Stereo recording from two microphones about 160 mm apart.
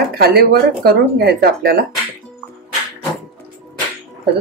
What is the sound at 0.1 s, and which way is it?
Speech, 75° right (ahead or behind).